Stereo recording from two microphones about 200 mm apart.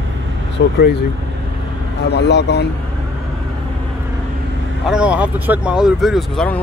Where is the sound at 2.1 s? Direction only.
55° left (ahead or behind).